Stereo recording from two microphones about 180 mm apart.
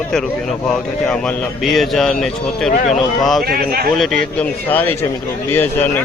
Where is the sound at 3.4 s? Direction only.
60° right (ahead or behind).